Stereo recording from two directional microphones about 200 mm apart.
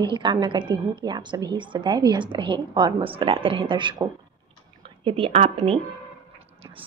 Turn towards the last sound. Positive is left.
turn(degrees=-35)  # may be behind; listen again after turning